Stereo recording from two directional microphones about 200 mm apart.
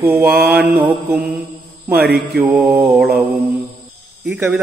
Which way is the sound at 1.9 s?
50° right (ahead or behind).